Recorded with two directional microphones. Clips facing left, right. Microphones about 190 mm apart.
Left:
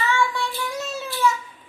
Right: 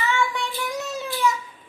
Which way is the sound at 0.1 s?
20° right (ahead or behind).